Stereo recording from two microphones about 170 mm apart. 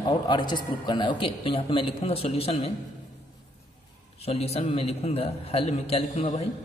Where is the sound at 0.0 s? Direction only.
25° left (ahead or behind).